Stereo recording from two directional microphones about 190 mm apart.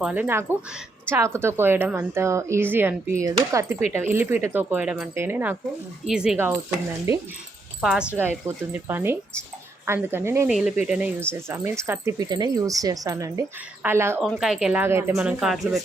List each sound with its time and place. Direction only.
0.0 s speech: 10° right (ahead or behind)
7.8 s speech: 5° right (ahead or behind)
10.5 s speech: centre (ahead or behind)
14.2 s speech: centre (ahead or behind)